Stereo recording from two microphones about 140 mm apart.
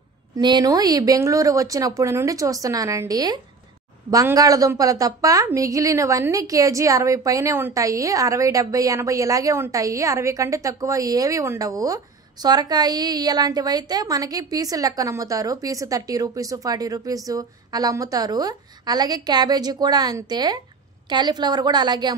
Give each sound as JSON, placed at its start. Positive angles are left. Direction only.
{"t": 0.4, "sound": "a woman's voice", "side_deg": -30}